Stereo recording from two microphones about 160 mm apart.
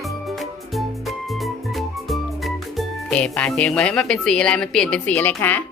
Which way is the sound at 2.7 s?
5° left (ahead or behind).